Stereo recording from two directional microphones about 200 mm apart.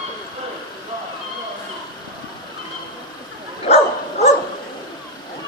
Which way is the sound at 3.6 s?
30° left (ahead or behind).